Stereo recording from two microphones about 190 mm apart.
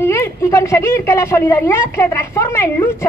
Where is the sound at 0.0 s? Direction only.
15° left (ahead or behind).